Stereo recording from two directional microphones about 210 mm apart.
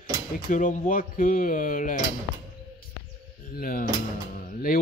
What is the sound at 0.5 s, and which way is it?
Speech, 40° left (ahead or behind).